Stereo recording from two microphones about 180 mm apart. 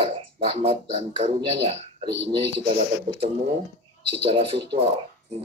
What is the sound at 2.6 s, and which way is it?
Speech, 30° right (ahead or behind).